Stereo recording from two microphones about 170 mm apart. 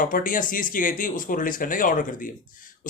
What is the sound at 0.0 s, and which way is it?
Speech, 55° left (ahead or behind).